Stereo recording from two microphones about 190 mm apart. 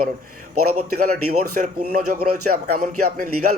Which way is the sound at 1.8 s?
50° right (ahead or behind).